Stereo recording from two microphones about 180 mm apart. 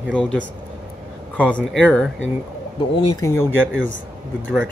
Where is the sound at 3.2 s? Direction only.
15° left (ahead or behind).